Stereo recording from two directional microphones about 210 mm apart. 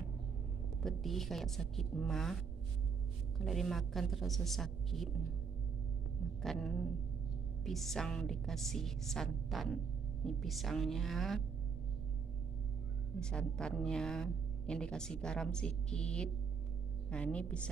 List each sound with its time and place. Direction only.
0.8 s a woman's voice: centre (ahead or behind)
3.3 s a woman's voice: centre (ahead or behind)
6.4 s a woman's voice: centre (ahead or behind)
13.2 s a woman's voice: 5° left (ahead or behind)